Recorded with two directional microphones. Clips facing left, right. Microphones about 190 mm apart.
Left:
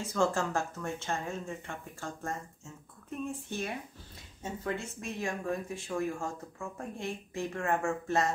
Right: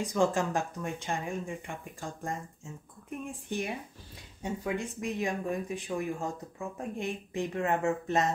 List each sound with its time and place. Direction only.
0.0 s speech: 15° right (ahead or behind)